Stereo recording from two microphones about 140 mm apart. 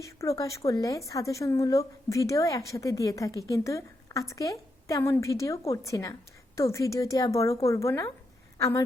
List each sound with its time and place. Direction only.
0.0 s speech: 20° left (ahead or behind)